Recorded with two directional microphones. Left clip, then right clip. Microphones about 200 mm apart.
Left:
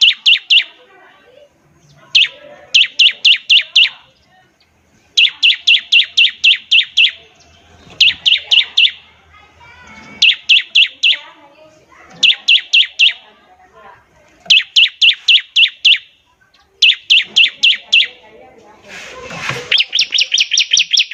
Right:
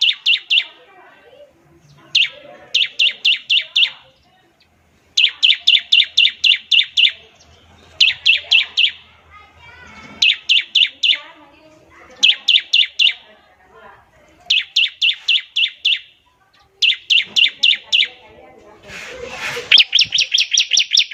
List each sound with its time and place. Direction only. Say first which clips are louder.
0.0 s bird: left 6 dB; 25° left (ahead or behind)
2.1 s bird: left 4 dB; 20° left (ahead or behind)
2.7 s chirp: left 6 dB; 25° left (ahead or behind)
5.1 s chirp: left 3 dB; 5° left (ahead or behind)
10.2 s chirp: left 4 dB; 5° left (ahead or behind)
12.2 s chirp: left 3 dB; 5° left (ahead or behind)
14.4 s bird: left 6 dB; 25° left (ahead or behind)
16.8 s chirp: left 5 dB; 20° left (ahead or behind)
19.7 s chirp: right 3 dB; 25° right (ahead or behind)
20.1 s chirp: left 2 dB; 15° left (ahead or behind)